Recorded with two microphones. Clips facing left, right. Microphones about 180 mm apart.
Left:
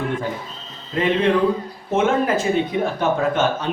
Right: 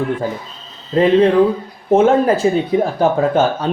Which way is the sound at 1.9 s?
35° right (ahead or behind).